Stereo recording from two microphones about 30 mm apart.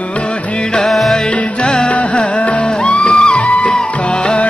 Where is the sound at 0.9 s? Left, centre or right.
Centre.